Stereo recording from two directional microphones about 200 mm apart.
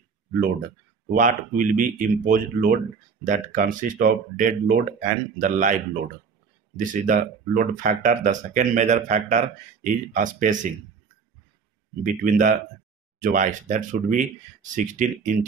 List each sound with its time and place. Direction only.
0.3 s speech: 45° right (ahead or behind)
6.8 s speech: 40° right (ahead or behind)
12.0 s speech: 40° right (ahead or behind)